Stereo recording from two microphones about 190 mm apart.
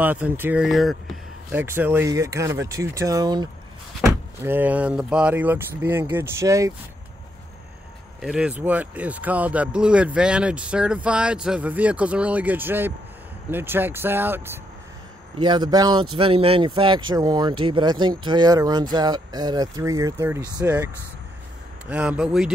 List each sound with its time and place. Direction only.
0.0 s speech: 10° right (ahead or behind)
8.2 s speech: 5° right (ahead or behind)
15.3 s speech: 25° right (ahead or behind); by 22.5 s 5° right (ahead or behind)